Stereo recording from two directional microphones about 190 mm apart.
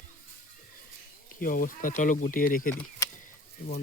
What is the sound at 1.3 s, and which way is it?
Speech, 45° left (ahead or behind).